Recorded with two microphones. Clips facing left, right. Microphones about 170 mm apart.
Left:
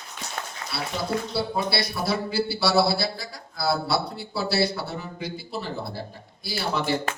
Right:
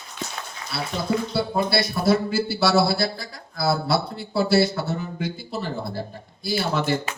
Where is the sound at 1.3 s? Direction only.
50° right (ahead or behind).